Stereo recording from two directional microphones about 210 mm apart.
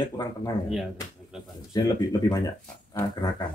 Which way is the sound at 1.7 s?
15° left (ahead or behind).